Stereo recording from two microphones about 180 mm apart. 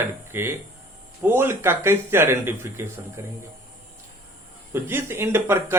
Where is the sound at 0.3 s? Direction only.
15° right (ahead or behind).